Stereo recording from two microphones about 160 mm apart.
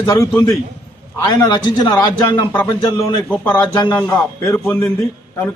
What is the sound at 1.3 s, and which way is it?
A man's voice, 25° left (ahead or behind).